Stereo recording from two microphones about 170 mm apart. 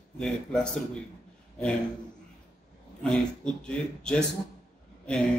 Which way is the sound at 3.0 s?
5° left (ahead or behind).